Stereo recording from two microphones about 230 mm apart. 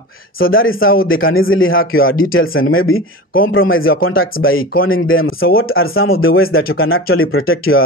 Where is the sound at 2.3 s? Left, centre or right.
Left.